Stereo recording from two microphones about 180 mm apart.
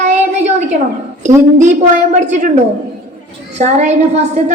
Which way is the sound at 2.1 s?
40° right (ahead or behind).